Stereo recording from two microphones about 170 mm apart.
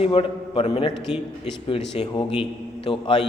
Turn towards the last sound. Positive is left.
turn(degrees=30)  # may be behind; listen again after turning